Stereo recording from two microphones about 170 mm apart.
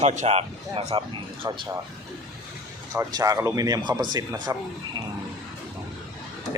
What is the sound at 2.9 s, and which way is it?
Speech, 20° right (ahead or behind).